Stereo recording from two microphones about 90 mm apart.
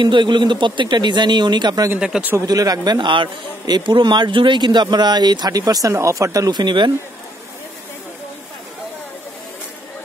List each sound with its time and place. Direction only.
0.0 s speech: 60° right (ahead or behind)
2.0 s a man's voice: 10° right (ahead or behind)
2.4 s a man's voice: 45° right (ahead or behind)
6.5 s speech: 55° right (ahead or behind)